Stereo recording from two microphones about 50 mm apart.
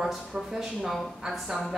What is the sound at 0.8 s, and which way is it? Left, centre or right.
Speech, centre.